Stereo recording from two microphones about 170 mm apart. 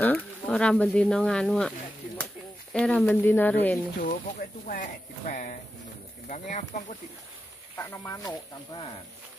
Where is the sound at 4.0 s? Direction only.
55° left (ahead or behind).